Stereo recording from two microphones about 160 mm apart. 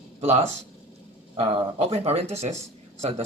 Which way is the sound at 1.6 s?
40° right (ahead or behind).